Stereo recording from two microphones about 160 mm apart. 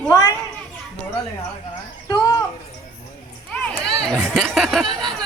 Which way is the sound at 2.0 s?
25° left (ahead or behind).